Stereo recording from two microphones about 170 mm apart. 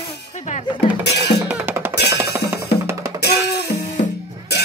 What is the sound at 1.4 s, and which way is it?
Drum, 10° right (ahead or behind).